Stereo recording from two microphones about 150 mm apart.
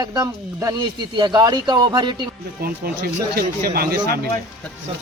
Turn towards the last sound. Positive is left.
turn(degrees=-90)